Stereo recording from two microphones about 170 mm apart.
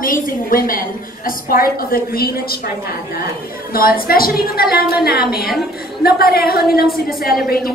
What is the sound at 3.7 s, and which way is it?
A woman's voice, 60° left (ahead or behind).